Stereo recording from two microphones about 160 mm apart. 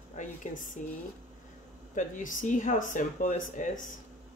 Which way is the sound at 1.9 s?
55° left (ahead or behind).